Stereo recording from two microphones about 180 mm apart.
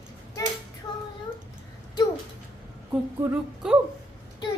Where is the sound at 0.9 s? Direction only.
20° left (ahead or behind).